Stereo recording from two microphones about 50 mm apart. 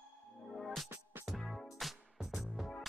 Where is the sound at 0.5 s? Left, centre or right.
Centre.